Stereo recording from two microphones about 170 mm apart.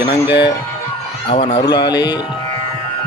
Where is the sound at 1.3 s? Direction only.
30° left (ahead or behind).